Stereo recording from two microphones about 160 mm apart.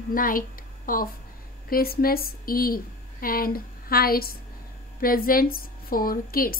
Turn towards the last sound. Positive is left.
turn(degrees=65)  # may be behind; listen again after turning